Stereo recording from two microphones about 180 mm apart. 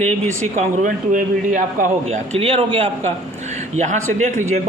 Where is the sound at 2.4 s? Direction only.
30° right (ahead or behind).